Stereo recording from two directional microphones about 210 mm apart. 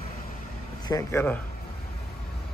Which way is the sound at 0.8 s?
15° left (ahead or behind).